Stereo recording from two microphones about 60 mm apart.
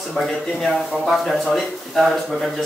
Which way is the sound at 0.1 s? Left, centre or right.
Centre.